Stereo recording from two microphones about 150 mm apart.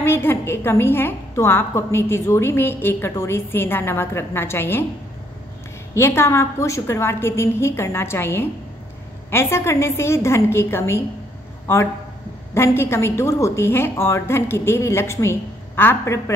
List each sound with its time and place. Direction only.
0.0 s a woman's voice: 15° left (ahead or behind)
5.9 s a woman's voice: 15° left (ahead or behind)